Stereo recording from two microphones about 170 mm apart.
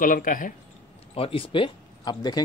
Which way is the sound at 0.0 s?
55° left (ahead or behind).